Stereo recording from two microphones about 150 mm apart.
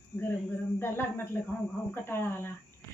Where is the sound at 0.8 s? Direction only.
15° left (ahead or behind).